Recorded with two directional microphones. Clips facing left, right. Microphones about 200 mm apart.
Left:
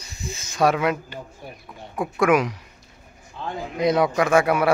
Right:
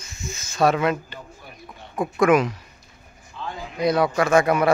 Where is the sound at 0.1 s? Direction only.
35° left (ahead or behind).